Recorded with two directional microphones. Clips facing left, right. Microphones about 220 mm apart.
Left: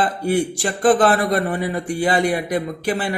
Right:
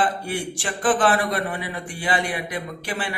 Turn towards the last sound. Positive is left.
turn(degrees=40)  # may be behind; listen again after turning